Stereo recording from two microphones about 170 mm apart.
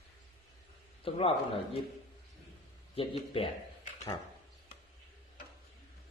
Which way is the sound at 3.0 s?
35° left (ahead or behind).